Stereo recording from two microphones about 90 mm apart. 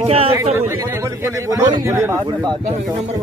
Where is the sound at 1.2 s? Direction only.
30° right (ahead or behind).